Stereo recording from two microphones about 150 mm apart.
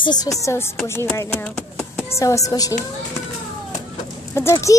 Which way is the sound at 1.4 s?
5° left (ahead or behind).